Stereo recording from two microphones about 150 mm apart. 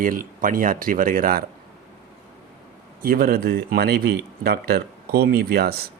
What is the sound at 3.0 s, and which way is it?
Speech, 85° right.